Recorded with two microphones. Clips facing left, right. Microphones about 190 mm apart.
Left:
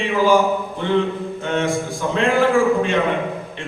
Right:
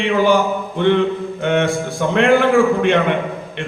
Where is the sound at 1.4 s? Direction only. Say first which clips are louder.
Right 4 dB; 65° right (ahead or behind).